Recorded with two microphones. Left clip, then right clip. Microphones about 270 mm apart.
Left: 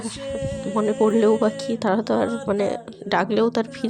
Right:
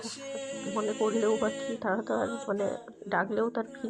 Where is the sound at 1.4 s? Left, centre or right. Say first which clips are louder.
Left 9 dB; left.